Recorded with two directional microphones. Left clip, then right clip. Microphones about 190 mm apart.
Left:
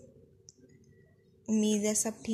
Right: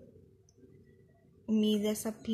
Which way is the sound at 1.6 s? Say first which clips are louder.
Left 1 dB; 15° left (ahead or behind).